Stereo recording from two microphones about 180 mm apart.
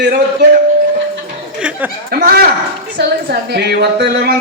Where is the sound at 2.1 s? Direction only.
60° right (ahead or behind).